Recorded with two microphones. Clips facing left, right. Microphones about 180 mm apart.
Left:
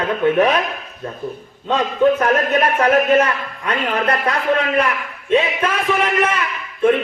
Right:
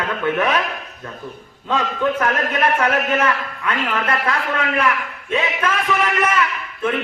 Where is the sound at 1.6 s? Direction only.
30° left (ahead or behind).